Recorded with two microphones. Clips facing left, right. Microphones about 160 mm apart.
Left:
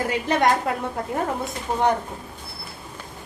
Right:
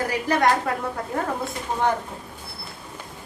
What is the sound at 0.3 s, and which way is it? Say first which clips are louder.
Speech: even; 20° left (ahead or behind).